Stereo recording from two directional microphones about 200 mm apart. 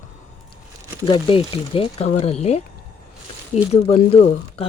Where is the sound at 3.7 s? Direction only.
30° left (ahead or behind).